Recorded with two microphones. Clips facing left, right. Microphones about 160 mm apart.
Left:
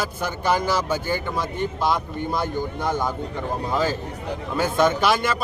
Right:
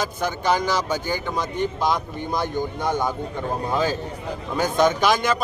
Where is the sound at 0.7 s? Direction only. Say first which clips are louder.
Left 1 dB; 5° left (ahead or behind).